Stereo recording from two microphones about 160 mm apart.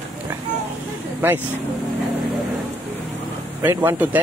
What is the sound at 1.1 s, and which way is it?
Speech, 10° right (ahead or behind).